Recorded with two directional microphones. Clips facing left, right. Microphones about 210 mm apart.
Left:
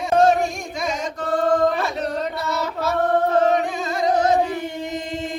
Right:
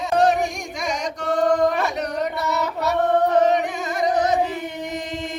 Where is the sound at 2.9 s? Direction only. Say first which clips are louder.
Right 1 dB; 20° right (ahead or behind).